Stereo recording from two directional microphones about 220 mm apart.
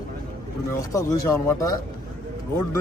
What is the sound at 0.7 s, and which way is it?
Speech, 15° left (ahead or behind).